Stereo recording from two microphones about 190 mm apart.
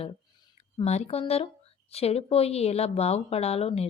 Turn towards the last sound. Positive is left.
turn(degrees=30)  # may be behind; listen again after turning